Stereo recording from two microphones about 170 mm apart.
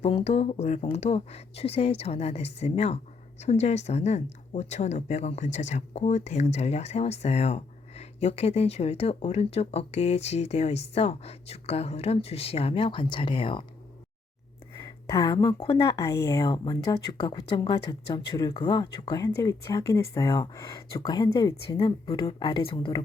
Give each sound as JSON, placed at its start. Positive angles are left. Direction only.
{"t": 0.0, "sound": "speech", "side_deg": 35}
{"t": 14.8, "sound": "a woman's voice", "side_deg": 20}